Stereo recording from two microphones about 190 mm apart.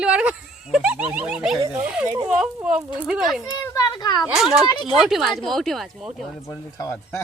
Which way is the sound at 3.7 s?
20° left (ahead or behind).